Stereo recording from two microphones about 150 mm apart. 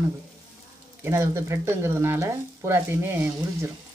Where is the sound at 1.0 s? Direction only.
15° right (ahead or behind).